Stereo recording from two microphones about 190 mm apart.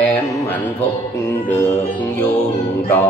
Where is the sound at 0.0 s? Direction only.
10° left (ahead or behind).